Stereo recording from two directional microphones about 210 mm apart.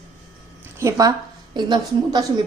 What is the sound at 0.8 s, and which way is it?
A woman's voice, 15° right (ahead or behind).